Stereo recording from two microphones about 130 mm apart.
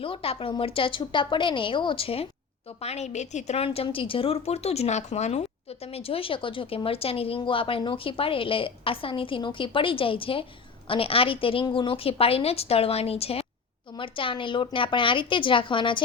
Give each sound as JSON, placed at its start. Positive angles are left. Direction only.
{"t": 0.0, "sound": "speech", "side_deg": 45}
{"t": 2.8, "sound": "a woman's voice", "side_deg": 55}